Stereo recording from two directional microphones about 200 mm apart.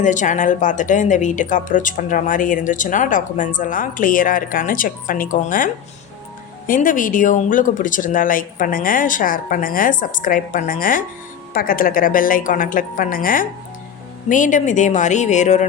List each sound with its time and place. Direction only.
0.0 s a woman's voice: 40° left (ahead or behind)